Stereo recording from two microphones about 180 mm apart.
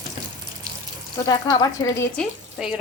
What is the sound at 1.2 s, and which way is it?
Speech, 20° left (ahead or behind).